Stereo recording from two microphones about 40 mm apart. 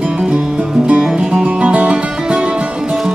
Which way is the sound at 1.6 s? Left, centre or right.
Right.